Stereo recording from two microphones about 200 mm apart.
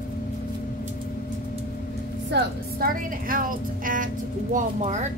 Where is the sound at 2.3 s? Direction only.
45° right (ahead or behind).